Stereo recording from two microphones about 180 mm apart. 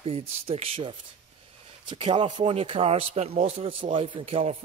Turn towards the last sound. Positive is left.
turn(degrees=-30)  # may be behind; listen again after turning